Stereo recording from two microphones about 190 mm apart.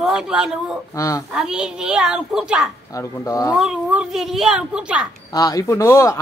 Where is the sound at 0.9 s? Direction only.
15° left (ahead or behind).